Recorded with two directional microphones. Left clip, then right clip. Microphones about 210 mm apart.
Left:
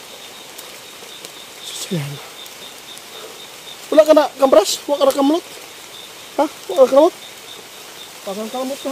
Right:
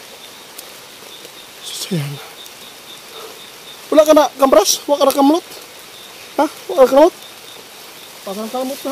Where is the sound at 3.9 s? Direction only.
40° right (ahead or behind).